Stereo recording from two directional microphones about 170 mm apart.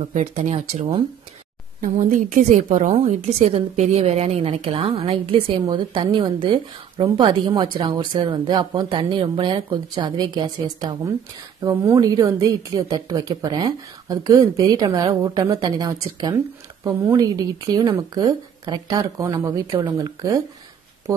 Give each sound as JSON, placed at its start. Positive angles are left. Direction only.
{"t": 0.0, "sound": "a woman's voice", "side_deg": -40}
{"t": 1.8, "sound": "a woman's voice", "side_deg": -55}